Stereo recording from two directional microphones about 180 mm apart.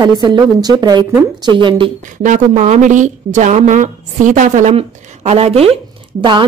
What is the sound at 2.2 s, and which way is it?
A woman's voice, 45° right (ahead or behind).